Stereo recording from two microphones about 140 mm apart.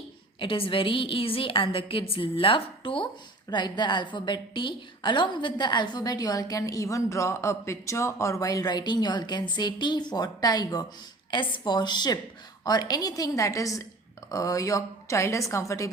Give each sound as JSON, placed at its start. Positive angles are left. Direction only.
{"t": 0.3, "sound": "a woman's voice", "side_deg": 40}